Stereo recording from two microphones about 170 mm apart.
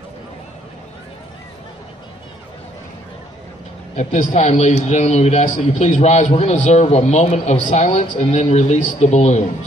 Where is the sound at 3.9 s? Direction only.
40° left (ahead or behind).